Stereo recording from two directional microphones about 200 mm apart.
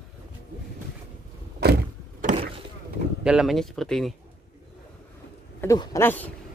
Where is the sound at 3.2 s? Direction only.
5° right (ahead or behind).